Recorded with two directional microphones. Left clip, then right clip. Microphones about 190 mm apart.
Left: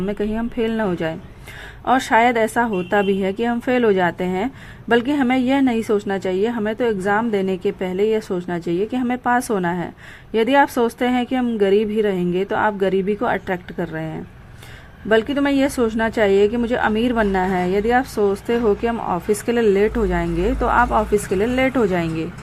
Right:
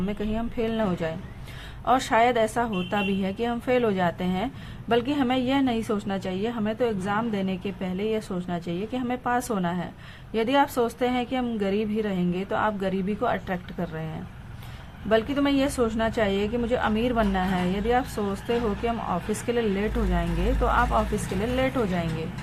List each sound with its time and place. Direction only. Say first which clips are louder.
0.0 s a woman's voice: left 7 dB; 30° left (ahead or behind)
15.1 s a woman's voice: left 6 dB; 35° left (ahead or behind)